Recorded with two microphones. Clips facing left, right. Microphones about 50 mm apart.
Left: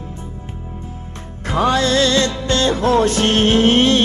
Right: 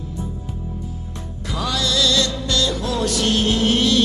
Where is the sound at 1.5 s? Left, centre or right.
Left.